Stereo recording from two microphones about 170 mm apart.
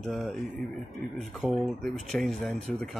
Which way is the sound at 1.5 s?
Centre (ahead or behind).